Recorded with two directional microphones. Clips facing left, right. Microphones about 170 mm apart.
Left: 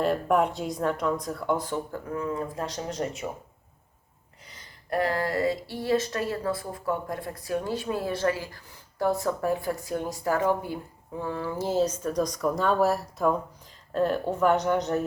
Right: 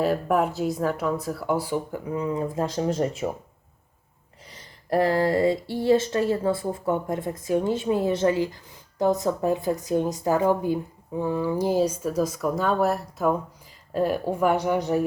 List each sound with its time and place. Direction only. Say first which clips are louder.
0.0 s speech: right 1 dB; 5° right (ahead or behind); by 3.2 s 30° right (ahead or behind)
4.9 s speech: right 6 dB; 30° right (ahead or behind); by 15.0 s 10° right (ahead or behind)